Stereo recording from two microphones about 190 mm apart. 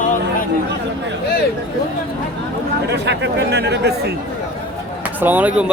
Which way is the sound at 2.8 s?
65° right (ahead or behind).